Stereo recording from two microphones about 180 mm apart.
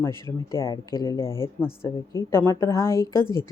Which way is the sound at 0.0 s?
15° left (ahead or behind).